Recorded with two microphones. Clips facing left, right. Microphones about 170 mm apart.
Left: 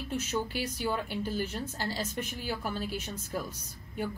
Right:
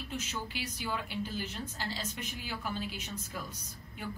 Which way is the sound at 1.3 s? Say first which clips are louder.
Left 5 dB; 45° left (ahead or behind).